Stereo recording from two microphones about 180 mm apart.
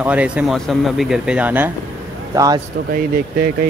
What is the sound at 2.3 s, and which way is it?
Speech, 20° right (ahead or behind).